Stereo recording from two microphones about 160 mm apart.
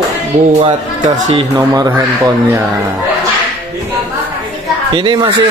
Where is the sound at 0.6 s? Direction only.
50° right (ahead or behind).